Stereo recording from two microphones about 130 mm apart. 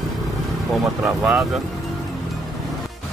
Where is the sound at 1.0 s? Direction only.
10° right (ahead or behind).